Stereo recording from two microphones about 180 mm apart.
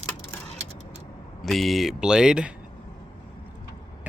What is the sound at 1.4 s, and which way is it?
Speech, centre (ahead or behind).